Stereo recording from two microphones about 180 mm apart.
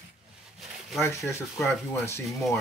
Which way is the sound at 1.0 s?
15° left (ahead or behind).